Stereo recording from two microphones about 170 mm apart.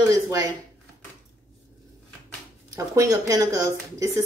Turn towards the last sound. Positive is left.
turn(degrees=-20)  # may be behind; listen again after turning